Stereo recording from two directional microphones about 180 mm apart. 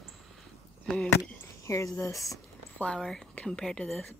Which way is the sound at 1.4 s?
15° left (ahead or behind).